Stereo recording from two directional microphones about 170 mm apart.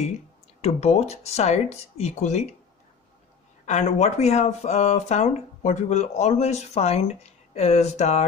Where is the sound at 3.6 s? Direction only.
45° left (ahead or behind).